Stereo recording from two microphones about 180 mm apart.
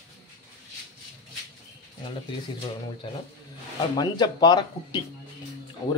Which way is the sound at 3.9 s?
25° left (ahead or behind).